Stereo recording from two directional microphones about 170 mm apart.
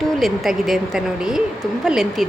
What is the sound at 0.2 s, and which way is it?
Speech, centre (ahead or behind).